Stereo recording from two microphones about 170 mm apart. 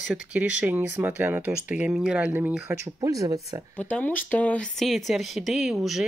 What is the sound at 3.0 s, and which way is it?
Speech, 20° right (ahead or behind).